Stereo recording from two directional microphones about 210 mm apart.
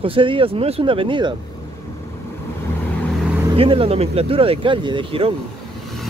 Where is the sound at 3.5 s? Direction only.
25° right (ahead or behind).